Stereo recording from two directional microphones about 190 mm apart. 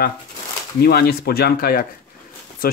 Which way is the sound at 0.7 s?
55° left (ahead or behind).